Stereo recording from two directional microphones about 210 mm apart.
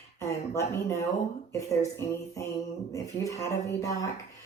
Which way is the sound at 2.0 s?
15° left (ahead or behind).